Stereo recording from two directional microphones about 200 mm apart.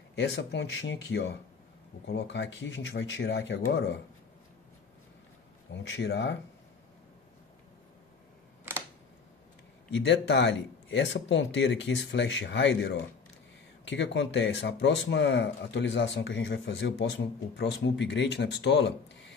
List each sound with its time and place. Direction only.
0.1 s speech: 60° left (ahead or behind)
5.7 s speech: 60° left (ahead or behind)
9.8 s speech: 55° left (ahead or behind)